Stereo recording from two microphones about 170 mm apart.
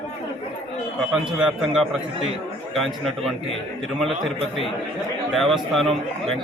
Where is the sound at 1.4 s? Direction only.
Centre (ahead or behind).